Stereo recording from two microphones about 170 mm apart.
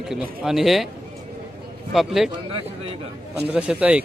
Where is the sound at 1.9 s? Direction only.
Centre (ahead or behind).